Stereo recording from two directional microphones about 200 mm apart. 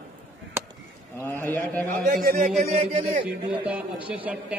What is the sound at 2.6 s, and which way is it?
Music, 35° right (ahead or behind).